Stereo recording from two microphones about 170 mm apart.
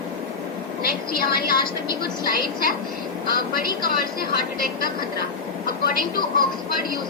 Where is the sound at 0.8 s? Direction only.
60° left (ahead or behind).